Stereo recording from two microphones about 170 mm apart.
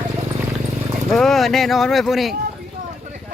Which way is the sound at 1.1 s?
Centre (ahead or behind).